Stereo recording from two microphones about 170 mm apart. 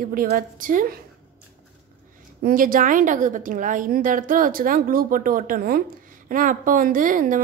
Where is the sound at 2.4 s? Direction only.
55° right (ahead or behind).